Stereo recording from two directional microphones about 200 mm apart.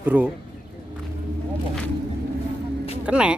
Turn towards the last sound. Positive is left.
turn(degrees=-5)  # may be behind; listen again after turning